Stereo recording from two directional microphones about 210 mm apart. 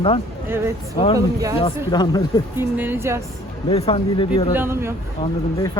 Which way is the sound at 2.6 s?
10° right (ahead or behind).